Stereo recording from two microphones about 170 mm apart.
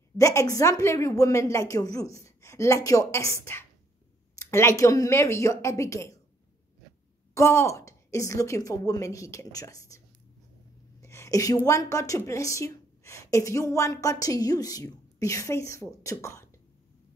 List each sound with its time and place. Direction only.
0.2 s a woman's voice: 20° left (ahead or behind)
7.3 s a woman's voice: 15° left (ahead or behind)